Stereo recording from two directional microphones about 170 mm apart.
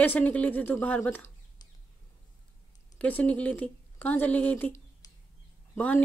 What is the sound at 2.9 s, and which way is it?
A woman's voice, 10° left (ahead or behind).